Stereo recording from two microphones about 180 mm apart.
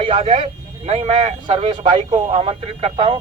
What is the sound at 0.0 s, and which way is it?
A man's voice, 30° right (ahead or behind).